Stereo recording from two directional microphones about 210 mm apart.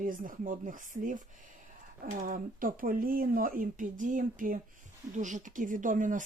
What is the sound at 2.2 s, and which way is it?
Speech, 40° right (ahead or behind).